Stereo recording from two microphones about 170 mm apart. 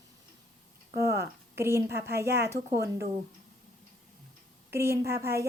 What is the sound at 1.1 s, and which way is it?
Speech, 15° right (ahead or behind).